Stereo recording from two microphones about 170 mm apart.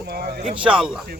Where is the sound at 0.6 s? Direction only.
5° right (ahead or behind).